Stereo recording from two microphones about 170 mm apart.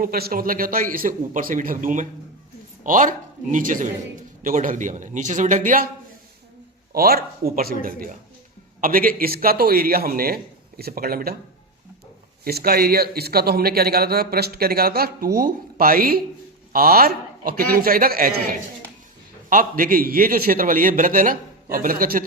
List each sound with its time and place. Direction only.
0.0 s a man's voice: 60° right (ahead or behind)
6.9 s a man's voice: 60° right (ahead or behind)
12.5 s a man's voice: 65° right (ahead or behind)